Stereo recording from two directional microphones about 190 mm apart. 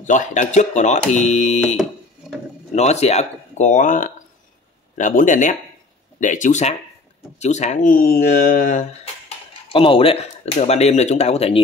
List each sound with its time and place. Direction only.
0.0 s speech: 40° left (ahead or behind)
9.7 s speech: 30° left (ahead or behind)